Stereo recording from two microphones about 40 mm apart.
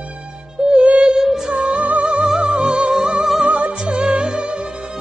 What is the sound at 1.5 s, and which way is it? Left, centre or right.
Music, right.